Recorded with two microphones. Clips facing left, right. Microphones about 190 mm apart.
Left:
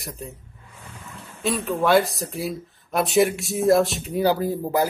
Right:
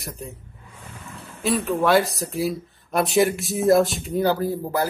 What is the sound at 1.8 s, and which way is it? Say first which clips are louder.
Speech: left 1 dB; centre (ahead or behind).